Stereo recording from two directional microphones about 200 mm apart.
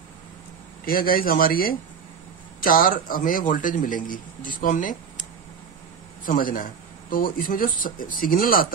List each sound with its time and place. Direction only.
0.8 s speech: 45° left (ahead or behind)
6.2 s speech: 45° left (ahead or behind)